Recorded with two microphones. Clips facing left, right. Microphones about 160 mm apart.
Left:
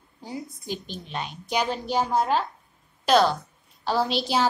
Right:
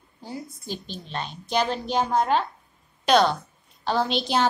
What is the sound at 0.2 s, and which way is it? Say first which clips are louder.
A woman's voice: left 1 dB; 15° left (ahead or behind).